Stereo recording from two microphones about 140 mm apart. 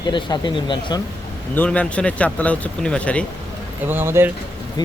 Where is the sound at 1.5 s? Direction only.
10° left (ahead or behind).